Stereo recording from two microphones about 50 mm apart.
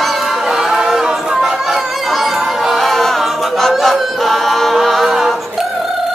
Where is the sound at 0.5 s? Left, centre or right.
Centre.